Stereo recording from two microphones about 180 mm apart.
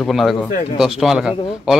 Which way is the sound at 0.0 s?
Centre (ahead or behind).